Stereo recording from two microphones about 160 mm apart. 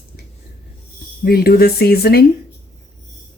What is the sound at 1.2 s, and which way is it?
Speech, 70° left (ahead or behind).